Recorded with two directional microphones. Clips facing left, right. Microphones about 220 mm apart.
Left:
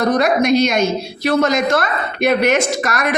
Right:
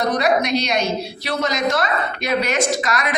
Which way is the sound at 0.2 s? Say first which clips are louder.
Left 5 dB; 50° left (ahead or behind).